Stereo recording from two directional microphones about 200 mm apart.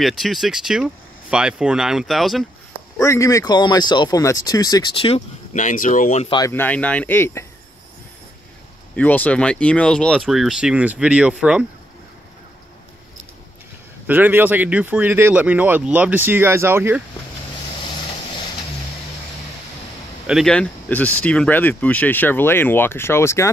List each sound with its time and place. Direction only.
0.0 s speech: centre (ahead or behind)
3.0 s speech: 15° left (ahead or behind); by 6.3 s 35° left (ahead or behind)
6.3 s speech: 15° left (ahead or behind)
8.9 s speech: 10° left (ahead or behind)
14.0 s speech: 10° right (ahead or behind)
20.2 s speech: centre (ahead or behind)